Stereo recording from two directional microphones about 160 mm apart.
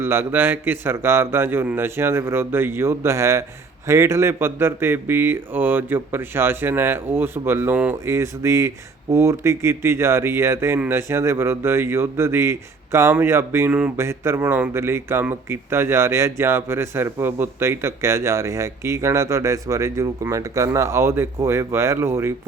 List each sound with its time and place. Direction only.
0.0 s speech: 15° right (ahead or behind)